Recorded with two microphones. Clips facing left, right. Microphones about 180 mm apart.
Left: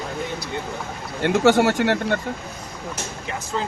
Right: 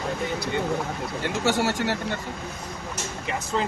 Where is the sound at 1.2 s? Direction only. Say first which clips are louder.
Left 8 dB; 65° left (ahead or behind).